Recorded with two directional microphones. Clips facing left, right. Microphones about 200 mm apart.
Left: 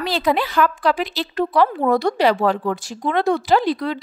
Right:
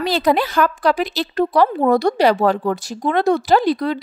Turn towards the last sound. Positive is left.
turn(degrees=-40)  # may be behind; listen again after turning